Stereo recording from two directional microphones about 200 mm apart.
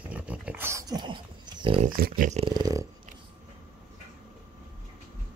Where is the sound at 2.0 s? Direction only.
40° right (ahead or behind).